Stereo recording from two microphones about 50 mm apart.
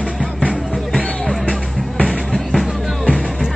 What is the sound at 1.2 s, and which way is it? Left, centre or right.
Music, centre.